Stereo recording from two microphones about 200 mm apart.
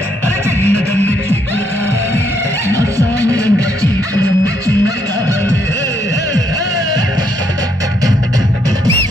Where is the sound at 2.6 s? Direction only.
15° right (ahead or behind).